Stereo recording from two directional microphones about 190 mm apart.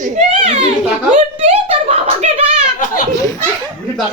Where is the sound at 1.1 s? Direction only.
40° right (ahead or behind).